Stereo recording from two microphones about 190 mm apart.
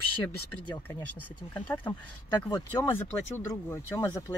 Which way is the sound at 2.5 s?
20° left (ahead or behind).